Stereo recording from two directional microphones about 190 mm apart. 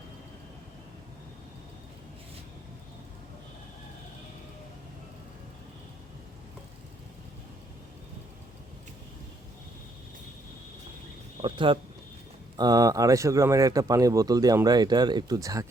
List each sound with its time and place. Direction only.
11.4 s speech: 25° right (ahead or behind)